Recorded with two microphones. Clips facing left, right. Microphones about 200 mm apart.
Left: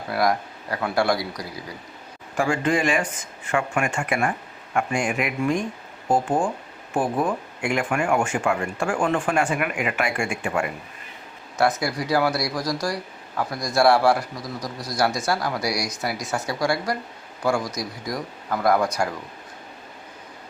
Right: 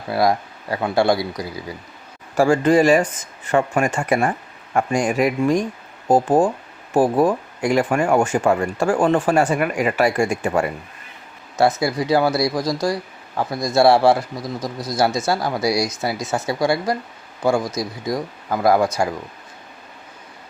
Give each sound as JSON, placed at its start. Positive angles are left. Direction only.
{"t": 0.1, "sound": "speech", "side_deg": -25}
{"t": 2.3, "sound": "speech", "side_deg": -40}
{"t": 11.5, "sound": "speech", "side_deg": -25}